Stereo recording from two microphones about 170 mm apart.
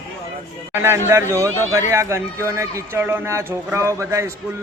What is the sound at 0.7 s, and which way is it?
Speech, 15° right (ahead or behind).